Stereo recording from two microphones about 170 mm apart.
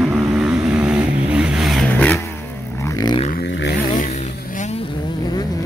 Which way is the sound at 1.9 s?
10° left (ahead or behind).